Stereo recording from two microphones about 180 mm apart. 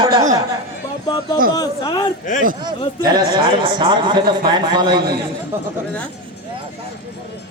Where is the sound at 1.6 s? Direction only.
25° left (ahead or behind).